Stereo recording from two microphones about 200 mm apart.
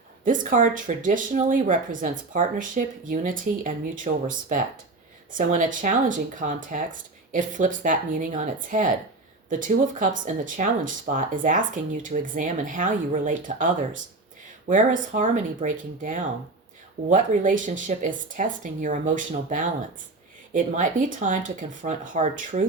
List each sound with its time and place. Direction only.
0.3 s speech: 40° right (ahead or behind)